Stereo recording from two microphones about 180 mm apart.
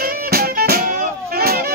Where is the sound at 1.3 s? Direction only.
60° right (ahead or behind).